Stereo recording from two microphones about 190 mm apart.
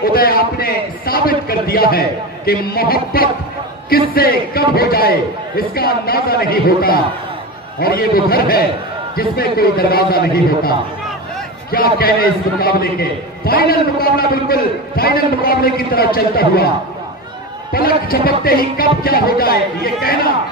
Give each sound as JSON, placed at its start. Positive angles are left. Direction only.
{"t": 0.0, "sound": "a sound", "side_deg": 50}
{"t": 3.9, "sound": "a man's voice", "side_deg": 50}
{"t": 11.7, "sound": "a man's voice", "side_deg": 50}
{"t": 17.7, "sound": "a man's voice", "side_deg": 50}